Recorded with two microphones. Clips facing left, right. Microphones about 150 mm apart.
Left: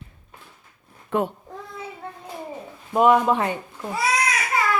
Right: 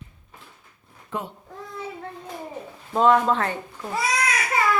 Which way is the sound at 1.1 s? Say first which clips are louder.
Left 8 dB; 60° left (ahead or behind).